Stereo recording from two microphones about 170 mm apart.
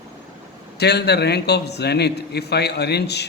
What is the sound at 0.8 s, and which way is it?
A man's voice, 75° left (ahead or behind).